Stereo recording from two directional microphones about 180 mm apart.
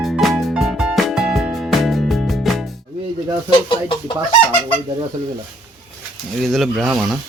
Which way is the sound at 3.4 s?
25° left (ahead or behind).